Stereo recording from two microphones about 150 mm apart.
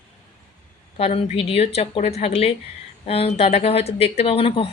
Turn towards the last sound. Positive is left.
turn(degrees=40)  # may be behind; listen again after turning